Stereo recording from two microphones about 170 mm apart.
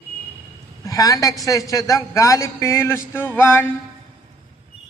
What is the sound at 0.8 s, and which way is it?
A woman's voice, 20° left (ahead or behind).